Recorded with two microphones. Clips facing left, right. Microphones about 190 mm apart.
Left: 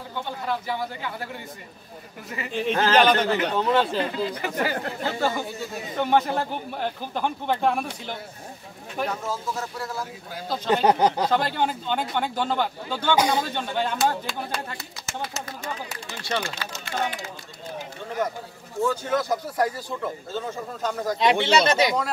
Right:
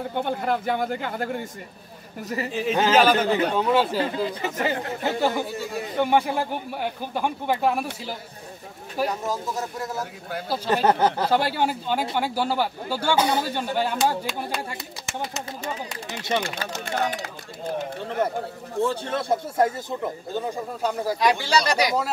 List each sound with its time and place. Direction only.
0.1 s speech: 55° right (ahead or behind)
2.2 s speech: 40° right (ahead or behind)
2.5 s a man's voice: 5° right (ahead or behind)
5.0 s speech: 15° right (ahead or behind)
9.2 s speech: 15° right (ahead or behind)
10.5 s speech: 5° right (ahead or behind)
10.9 s speech: 15° left (ahead or behind)
11.2 s speech: 5° right (ahead or behind)
16.1 s speech: 15° right (ahead or behind)
16.5 s speech: 50° right (ahead or behind)
17.2 s speech: 60° right (ahead or behind)
18.8 s speech: 30° right (ahead or behind); by 21.2 s 10° right (ahead or behind)
21.2 s speech: 25° left (ahead or behind)